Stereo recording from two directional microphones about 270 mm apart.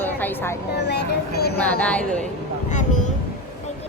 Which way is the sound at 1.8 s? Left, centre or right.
Centre.